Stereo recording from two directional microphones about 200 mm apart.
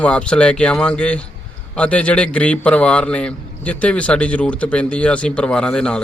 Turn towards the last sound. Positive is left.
turn(degrees=5)  # may be behind; listen again after turning